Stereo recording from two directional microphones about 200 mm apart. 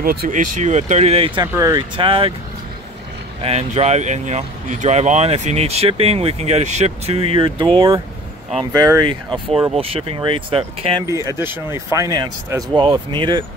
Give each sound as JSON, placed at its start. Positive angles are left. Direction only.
{"t": 0.0, "sound": "speech", "side_deg": -50}
{"t": 1.5, "sound": "speech", "side_deg": -15}
{"t": 2.0, "sound": "speech", "side_deg": -25}
{"t": 3.4, "sound": "speech", "side_deg": -30}
{"t": 11.1, "sound": "speech", "side_deg": -15}